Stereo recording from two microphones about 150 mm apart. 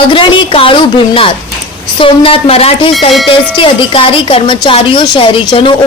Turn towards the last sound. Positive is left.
turn(degrees=35)  # may be behind; listen again after turning